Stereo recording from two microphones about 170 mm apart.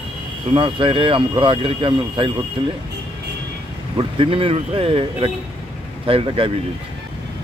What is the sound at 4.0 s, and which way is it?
Speech, 30° right (ahead or behind).